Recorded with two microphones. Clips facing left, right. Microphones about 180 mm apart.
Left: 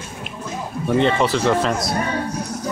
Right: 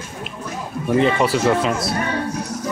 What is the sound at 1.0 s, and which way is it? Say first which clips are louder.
Speech: right 1 dB; 5° right (ahead or behind).